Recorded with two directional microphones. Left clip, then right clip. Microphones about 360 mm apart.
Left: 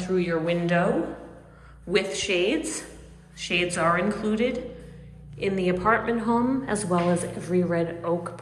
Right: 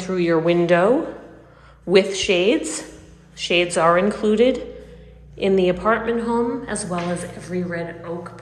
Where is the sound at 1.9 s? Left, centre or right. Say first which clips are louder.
Right 8 dB; centre.